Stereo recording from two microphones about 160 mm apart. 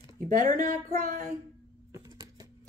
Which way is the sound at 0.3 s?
55° right (ahead or behind).